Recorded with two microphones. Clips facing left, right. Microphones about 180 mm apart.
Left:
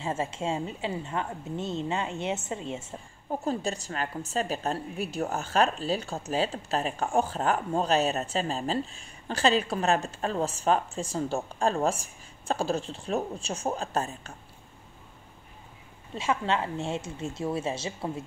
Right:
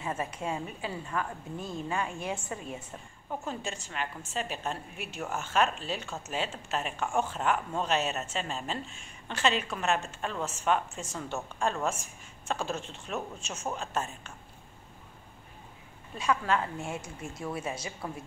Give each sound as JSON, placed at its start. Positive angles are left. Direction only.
{"t": 0.0, "sound": "a woman's voice", "side_deg": 25}
{"t": 3.3, "sound": "a woman's voice", "side_deg": 35}
{"t": 16.2, "sound": "a woman's voice", "side_deg": 25}